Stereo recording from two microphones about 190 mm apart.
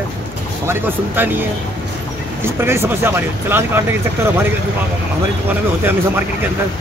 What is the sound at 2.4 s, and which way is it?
Speech, 15° right (ahead or behind).